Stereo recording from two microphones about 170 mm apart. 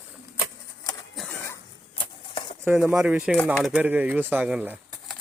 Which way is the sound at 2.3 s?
30° left (ahead or behind).